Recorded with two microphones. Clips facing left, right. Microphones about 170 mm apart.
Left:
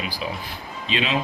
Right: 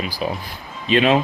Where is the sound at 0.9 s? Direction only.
55° right (ahead or behind).